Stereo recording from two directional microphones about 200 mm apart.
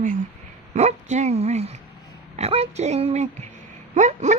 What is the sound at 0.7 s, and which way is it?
A woman's voice, 35° right (ahead or behind).